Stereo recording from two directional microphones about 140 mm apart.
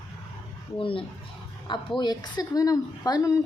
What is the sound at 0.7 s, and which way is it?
A woman's voice, 40° left (ahead or behind).